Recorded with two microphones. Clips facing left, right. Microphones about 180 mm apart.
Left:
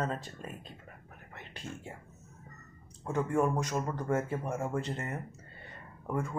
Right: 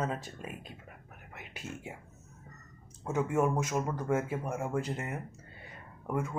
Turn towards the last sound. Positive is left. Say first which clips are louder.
# right 1 dB
turn(degrees=-5)  # may be behind; listen again after turning